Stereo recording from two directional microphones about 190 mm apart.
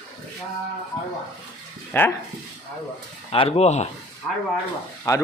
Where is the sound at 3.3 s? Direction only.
30° left (ahead or behind).